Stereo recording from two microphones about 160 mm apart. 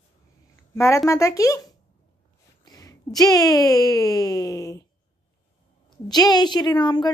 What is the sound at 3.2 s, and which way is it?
A woman's voice, 25° left (ahead or behind).